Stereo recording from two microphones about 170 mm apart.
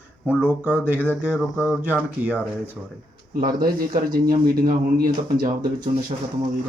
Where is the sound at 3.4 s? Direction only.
55° right (ahead or behind).